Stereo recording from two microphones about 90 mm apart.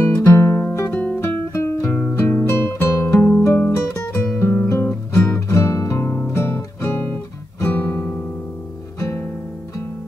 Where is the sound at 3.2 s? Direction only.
15° left (ahead or behind).